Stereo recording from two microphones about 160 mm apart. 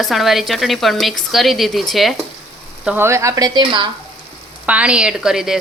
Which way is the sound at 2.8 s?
10° right (ahead or behind).